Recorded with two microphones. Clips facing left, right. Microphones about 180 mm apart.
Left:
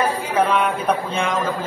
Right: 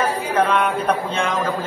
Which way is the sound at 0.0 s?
10° left (ahead or behind).